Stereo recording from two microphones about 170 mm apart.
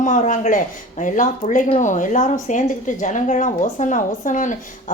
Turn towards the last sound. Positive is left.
turn(degrees=50)  # may be behind; listen again after turning